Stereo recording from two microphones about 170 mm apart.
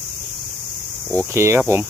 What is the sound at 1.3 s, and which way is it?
Speech, 15° right (ahead or behind).